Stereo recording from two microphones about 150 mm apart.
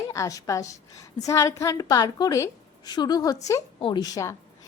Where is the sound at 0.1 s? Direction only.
20° left (ahead or behind).